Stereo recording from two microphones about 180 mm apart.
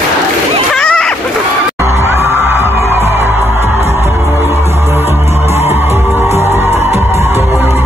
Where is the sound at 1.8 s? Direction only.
15° right (ahead or behind).